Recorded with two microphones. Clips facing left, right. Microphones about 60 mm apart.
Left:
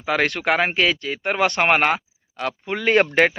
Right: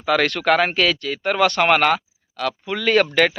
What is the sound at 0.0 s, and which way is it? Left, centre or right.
Speech, centre.